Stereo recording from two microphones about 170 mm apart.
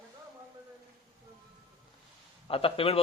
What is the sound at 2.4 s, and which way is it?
Speech, 35° left (ahead or behind).